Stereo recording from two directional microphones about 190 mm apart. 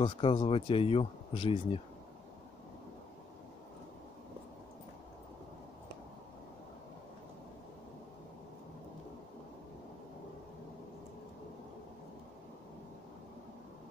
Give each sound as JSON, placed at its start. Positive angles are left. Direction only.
{"t": 0.0, "sound": "speech", "side_deg": 25}